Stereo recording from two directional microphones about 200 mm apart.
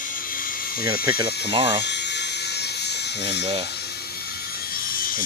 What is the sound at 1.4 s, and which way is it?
Speech, 25° right (ahead or behind).